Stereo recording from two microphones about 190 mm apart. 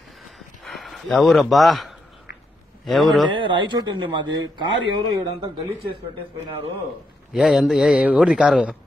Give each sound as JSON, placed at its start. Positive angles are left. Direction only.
{"t": 0.7, "sound": "a man's voice", "side_deg": 0}
{"t": 3.3, "sound": "speech", "side_deg": -25}
{"t": 7.3, "sound": "a man's voice", "side_deg": -5}